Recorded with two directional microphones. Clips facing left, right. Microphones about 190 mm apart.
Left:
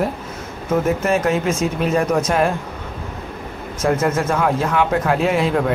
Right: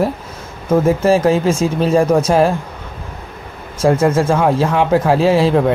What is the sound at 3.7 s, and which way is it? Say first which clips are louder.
A man's voice: right 5 dB; 30° right (ahead or behind).